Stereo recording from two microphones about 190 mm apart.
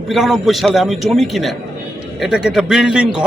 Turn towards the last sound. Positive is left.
turn(degrees=-5)  # may be behind; listen again after turning